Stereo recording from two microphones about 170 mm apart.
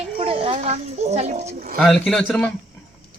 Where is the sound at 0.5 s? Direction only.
40° right (ahead or behind).